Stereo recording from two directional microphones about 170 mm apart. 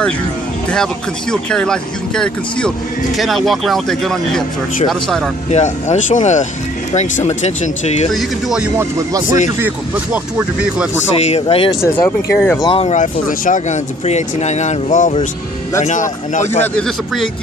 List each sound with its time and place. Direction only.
1.3 s speech: 5° left (ahead or behind)
5.5 s speech: 45° left (ahead or behind)
8.1 s speech: centre (ahead or behind)
11.2 s speech: 35° left (ahead or behind)
11.8 s speech: 15° left (ahead or behind)
12.6 s speech: 35° left (ahead or behind)
16.6 s speech: 5° left (ahead or behind)